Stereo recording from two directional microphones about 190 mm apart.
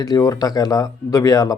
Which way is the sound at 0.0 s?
20° left (ahead or behind).